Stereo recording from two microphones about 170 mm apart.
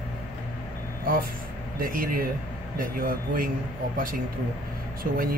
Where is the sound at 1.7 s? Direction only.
55° right (ahead or behind).